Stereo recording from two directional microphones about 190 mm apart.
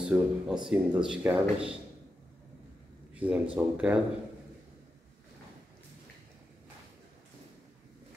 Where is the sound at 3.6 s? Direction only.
5° right (ahead or behind).